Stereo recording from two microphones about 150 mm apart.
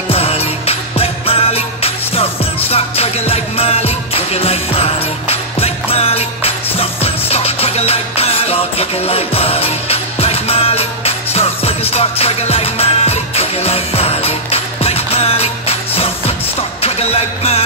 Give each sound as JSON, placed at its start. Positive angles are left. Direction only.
{"t": 0.1, "sound": "music", "side_deg": 40}